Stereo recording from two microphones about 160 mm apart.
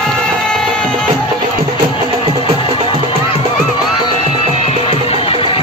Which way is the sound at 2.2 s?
35° right (ahead or behind).